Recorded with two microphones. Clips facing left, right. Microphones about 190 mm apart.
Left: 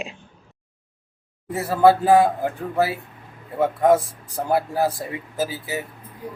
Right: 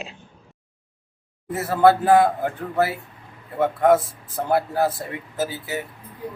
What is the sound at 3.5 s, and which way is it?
Speech, 15° left (ahead or behind).